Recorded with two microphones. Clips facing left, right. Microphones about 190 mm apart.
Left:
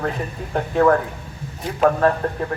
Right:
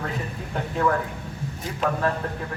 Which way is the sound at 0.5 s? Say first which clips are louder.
Left 7 dB; 55° left (ahead or behind).